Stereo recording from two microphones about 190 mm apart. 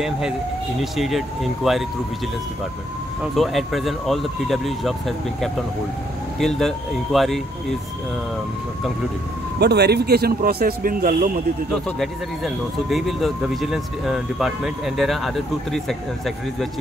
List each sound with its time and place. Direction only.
0.7 s speech: centre (ahead or behind)
3.3 s speech: centre (ahead or behind)
9.6 s speech: 60° right (ahead or behind)
11.7 s speech: centre (ahead or behind)